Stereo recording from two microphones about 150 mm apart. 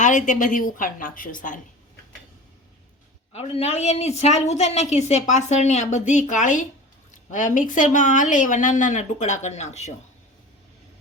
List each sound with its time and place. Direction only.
0.0 s a woman's voice: 55° left (ahead or behind)
3.3 s a woman's voice: 45° left (ahead or behind)